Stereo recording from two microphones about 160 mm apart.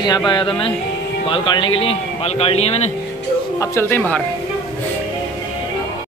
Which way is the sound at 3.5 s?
15° left (ahead or behind).